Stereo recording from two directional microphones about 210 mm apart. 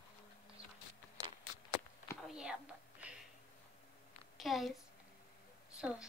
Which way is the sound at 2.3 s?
5° right (ahead or behind).